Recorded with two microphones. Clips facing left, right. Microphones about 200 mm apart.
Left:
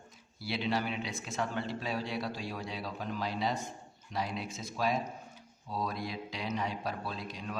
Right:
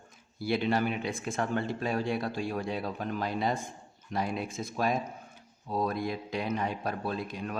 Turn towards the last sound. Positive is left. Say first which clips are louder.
# right 6 dB
turn(degrees=-55)  # may be behind; listen again after turning